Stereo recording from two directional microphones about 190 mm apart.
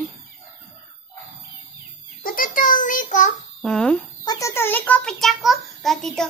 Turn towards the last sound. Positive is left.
turn(degrees=0)  # may be behind; listen again after turning